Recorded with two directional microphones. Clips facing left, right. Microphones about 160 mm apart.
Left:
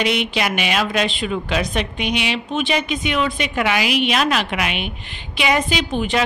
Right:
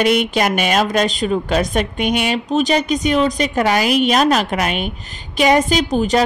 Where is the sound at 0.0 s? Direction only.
45° right (ahead or behind).